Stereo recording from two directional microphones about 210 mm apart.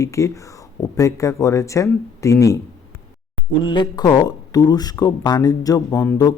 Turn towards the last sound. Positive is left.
turn(degrees=15)  # may be behind; listen again after turning